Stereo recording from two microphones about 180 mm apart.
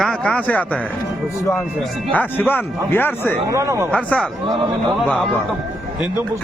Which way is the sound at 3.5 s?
15° right (ahead or behind).